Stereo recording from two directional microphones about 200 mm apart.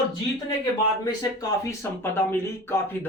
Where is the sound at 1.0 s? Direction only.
15° left (ahead or behind).